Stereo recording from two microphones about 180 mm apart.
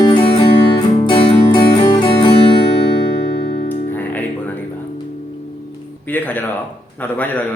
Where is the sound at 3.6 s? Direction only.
10° left (ahead or behind).